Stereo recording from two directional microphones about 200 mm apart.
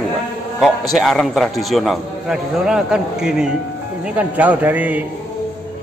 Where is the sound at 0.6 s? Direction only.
Centre (ahead or behind).